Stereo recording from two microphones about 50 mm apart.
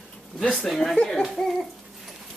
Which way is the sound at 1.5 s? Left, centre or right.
Centre.